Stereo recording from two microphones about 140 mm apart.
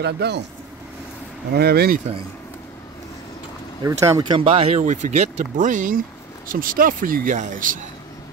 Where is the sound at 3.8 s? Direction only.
20° right (ahead or behind); by 4.8 s 45° right (ahead or behind).